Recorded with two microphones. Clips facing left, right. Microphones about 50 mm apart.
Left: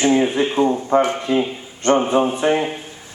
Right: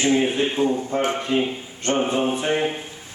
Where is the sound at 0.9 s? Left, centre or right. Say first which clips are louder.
Left 6 dB; left.